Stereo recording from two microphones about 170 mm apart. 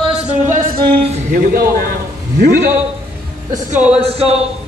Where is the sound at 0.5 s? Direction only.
50° right (ahead or behind).